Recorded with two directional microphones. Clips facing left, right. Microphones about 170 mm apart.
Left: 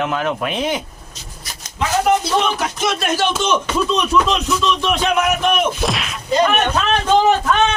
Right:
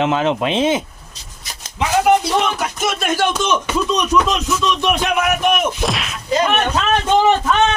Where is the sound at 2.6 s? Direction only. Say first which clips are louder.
Left 1 dB; 5° right (ahead or behind).